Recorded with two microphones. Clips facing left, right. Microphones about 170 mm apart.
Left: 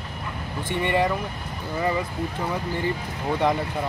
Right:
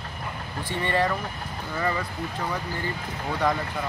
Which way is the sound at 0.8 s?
15° left (ahead or behind).